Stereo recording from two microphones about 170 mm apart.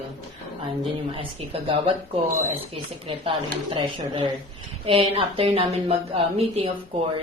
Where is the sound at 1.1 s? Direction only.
30° right (ahead or behind).